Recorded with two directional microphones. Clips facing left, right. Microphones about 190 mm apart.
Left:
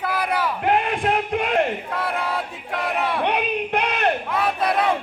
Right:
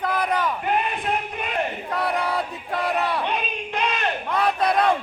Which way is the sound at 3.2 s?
65° left (ahead or behind).